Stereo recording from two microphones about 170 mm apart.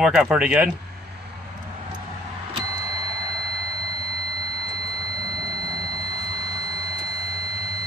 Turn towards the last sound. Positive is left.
turn(degrees=-15)  # may be behind; listen again after turning